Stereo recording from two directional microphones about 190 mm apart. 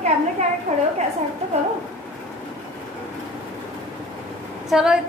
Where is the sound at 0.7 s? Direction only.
35° right (ahead or behind).